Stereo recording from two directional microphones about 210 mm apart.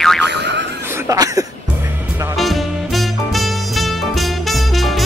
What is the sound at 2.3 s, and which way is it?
Music, centre (ahead or behind).